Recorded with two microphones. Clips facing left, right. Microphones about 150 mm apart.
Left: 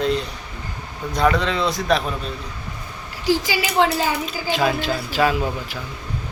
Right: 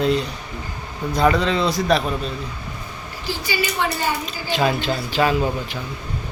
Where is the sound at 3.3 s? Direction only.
90° left.